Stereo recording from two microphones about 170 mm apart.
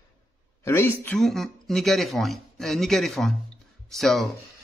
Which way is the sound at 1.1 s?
Centre (ahead or behind).